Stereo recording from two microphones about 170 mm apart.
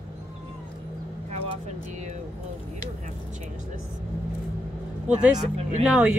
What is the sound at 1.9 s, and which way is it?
Speech, 45° right (ahead or behind).